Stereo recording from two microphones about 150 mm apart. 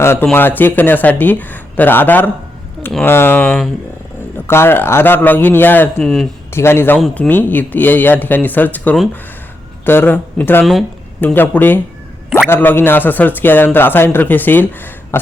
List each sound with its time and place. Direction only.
0.0 s speech: 15° left (ahead or behind)
6.5 s speech: 15° left (ahead or behind)